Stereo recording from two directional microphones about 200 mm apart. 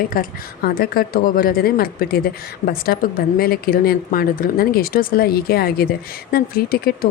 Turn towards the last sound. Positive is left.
turn(degrees=50)  # may be behind; listen again after turning